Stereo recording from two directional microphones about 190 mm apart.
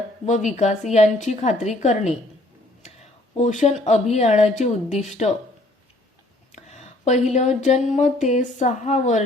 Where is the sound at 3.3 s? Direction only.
35° left (ahead or behind).